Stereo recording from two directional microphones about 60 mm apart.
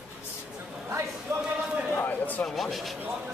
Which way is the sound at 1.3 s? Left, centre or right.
Right.